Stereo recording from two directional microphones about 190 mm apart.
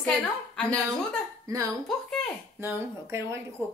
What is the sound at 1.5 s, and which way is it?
A woman's voice, 15° right (ahead or behind).